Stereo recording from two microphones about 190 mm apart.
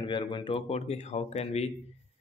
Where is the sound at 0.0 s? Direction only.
25° left (ahead or behind).